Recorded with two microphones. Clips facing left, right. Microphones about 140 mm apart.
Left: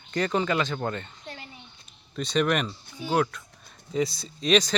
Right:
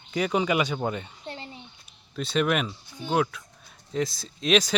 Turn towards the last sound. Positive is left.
turn(degrees=-5)  # may be behind; listen again after turning